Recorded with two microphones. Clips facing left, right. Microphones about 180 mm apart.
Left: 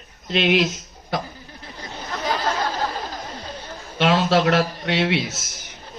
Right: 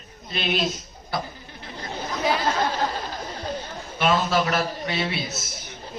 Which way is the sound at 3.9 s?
80° left.